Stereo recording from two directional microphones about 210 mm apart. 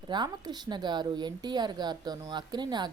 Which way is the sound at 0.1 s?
20° right (ahead or behind).